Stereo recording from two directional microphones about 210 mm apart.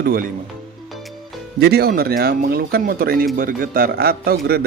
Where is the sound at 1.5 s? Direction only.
50° right (ahead or behind).